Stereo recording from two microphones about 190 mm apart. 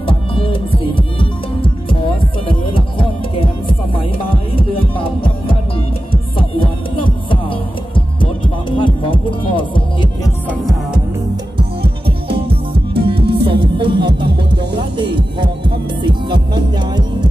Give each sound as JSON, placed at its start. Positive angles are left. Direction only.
{"t": 0.0, "sound": "music", "side_deg": 25}
{"t": 4.6, "sound": "music", "side_deg": 30}
{"t": 7.0, "sound": "heart sounds", "side_deg": 25}
{"t": 12.9, "sound": "music", "side_deg": -30}
{"t": 15.0, "sound": "music", "side_deg": -25}